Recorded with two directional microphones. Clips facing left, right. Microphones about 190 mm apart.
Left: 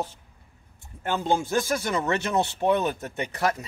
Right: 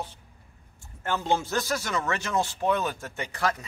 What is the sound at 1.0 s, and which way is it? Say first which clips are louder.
Speech: left 2 dB; 15° left (ahead or behind).